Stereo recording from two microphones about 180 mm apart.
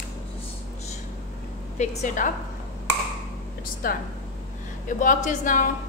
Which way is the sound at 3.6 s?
55° left (ahead or behind).